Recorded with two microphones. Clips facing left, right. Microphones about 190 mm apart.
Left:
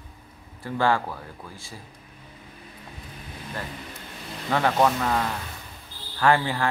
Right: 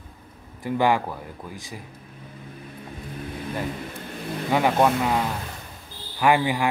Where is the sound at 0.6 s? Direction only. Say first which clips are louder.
Right 2 dB; 15° right (ahead or behind).